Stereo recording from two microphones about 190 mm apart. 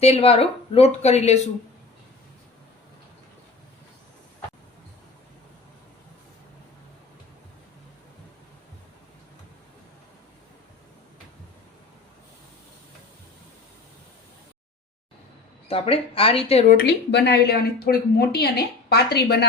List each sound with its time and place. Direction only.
0.0 s speech: 30° left (ahead or behind)
15.7 s speech: 30° left (ahead or behind)
16.7 s speech: 60° left (ahead or behind)